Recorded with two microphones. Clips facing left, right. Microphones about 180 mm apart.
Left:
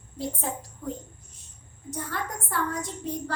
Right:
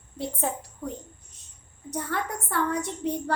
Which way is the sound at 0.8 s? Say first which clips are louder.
Even; 55° right (ahead or behind).